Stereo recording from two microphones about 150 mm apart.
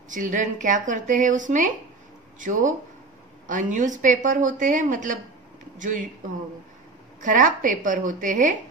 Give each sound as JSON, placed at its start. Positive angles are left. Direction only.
{"t": 0.1, "sound": "speech", "side_deg": -60}
{"t": 7.2, "sound": "speech", "side_deg": -60}